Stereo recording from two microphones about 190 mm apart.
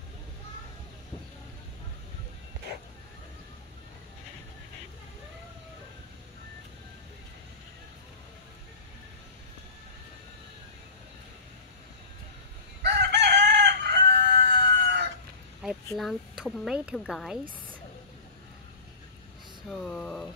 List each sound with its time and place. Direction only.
12.8 s chicken: 60° right (ahead or behind)
15.6 s speech: centre (ahead or behind)
19.7 s speech: 5° left (ahead or behind)